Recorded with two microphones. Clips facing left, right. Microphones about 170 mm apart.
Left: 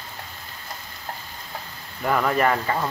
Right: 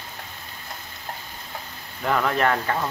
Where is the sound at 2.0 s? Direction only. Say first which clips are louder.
Left 1 dB; 5° left (ahead or behind).